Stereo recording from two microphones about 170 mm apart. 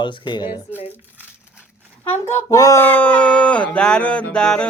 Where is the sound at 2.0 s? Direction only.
15° left (ahead or behind).